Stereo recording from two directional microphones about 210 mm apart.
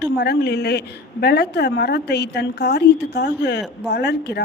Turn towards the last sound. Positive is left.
turn(degrees=50)  # may be behind; listen again after turning